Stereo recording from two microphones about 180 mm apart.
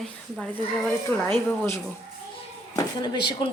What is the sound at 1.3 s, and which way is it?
Speech, 15° left (ahead or behind).